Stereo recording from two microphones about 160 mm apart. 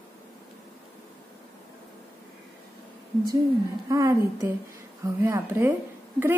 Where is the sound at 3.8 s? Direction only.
20° right (ahead or behind).